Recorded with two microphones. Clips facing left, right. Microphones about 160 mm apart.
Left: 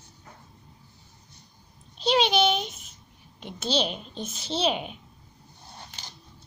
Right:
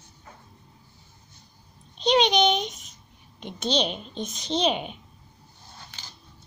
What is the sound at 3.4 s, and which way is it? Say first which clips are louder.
A woman's voice: right 1 dB; 5° left (ahead or behind).